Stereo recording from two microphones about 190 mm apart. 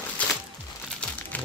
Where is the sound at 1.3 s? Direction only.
10° left (ahead or behind).